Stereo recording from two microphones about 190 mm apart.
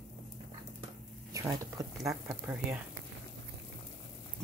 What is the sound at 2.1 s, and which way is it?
Speech, 5° right (ahead or behind).